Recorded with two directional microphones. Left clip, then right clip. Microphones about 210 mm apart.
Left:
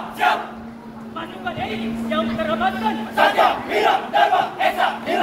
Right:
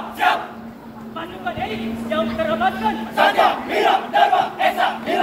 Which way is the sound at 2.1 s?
25° right (ahead or behind).